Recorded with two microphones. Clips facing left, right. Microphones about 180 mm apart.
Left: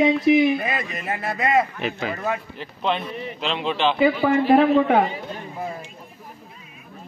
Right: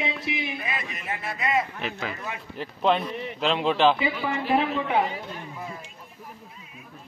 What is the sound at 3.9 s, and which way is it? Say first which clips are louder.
A man's voice: left 9 dB; 50° left (ahead or behind).